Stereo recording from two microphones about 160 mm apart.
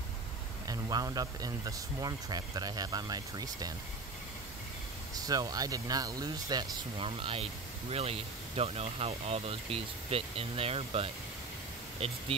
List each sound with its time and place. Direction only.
0.7 s speech: 25° right (ahead or behind)
5.1 s speech: 25° right (ahead or behind)